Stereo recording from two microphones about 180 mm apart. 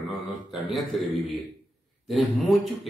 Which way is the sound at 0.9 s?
Centre (ahead or behind).